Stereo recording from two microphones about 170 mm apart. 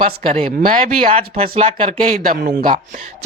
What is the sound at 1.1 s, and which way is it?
Speech, 35° right (ahead or behind).